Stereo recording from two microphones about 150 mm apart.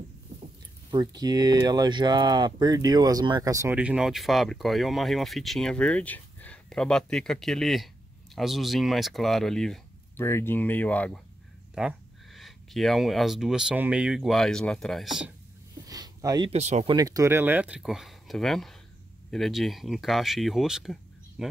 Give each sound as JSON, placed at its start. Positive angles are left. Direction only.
{"t": 0.9, "sound": "speech", "side_deg": -25}
{"t": 3.7, "sound": "speech", "side_deg": -5}
{"t": 10.1, "sound": "speech", "side_deg": 15}
{"t": 11.7, "sound": "speech", "side_deg": 0}
{"t": 15.9, "sound": "a sound", "side_deg": -25}
{"t": 16.4, "sound": "speech", "side_deg": -45}
{"t": 16.8, "sound": "speech", "side_deg": -25}